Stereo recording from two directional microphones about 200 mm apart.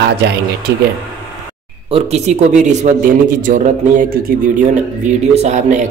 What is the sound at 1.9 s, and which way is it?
A man's voice, 30° right (ahead or behind).